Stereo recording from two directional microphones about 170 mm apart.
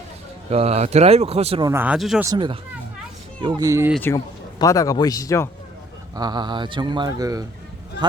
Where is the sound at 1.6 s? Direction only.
10° right (ahead or behind).